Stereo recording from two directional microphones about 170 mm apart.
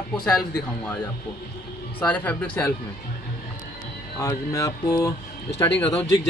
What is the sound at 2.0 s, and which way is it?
Speech, 10° left (ahead or behind).